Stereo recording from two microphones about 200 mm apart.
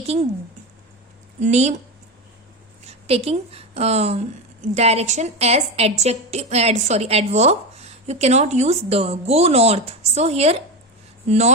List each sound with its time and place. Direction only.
1.4 s a woman's voice: 35° right (ahead or behind)
2.8 s a woman's voice: 30° right (ahead or behind)